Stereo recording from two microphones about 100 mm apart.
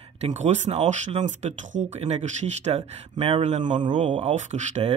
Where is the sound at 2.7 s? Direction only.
70° right (ahead or behind).